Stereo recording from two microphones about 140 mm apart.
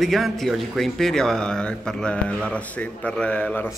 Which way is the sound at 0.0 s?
Centre (ahead or behind).